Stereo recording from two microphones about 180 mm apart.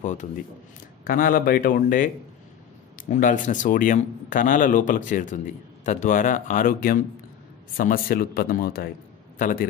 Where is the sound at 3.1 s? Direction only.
45° left (ahead or behind).